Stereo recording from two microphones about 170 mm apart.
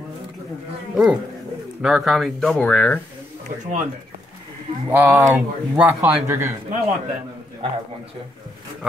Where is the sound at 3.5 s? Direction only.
55° right (ahead or behind).